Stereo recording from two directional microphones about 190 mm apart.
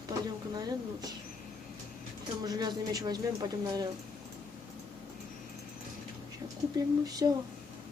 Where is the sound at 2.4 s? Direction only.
20° right (ahead or behind).